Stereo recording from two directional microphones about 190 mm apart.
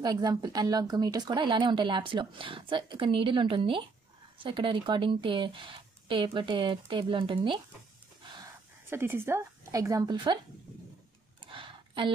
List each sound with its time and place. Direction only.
0.0 s speech: 20° right (ahead or behind)
8.8 s speech: 10° right (ahead or behind)
11.5 s a sound: 25° right (ahead or behind)